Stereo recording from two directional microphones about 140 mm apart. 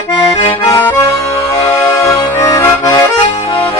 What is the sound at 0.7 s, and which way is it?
Accordion, 15° left (ahead or behind).